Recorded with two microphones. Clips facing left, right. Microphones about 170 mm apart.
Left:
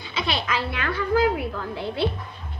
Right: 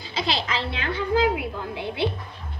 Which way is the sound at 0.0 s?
35° right (ahead or behind).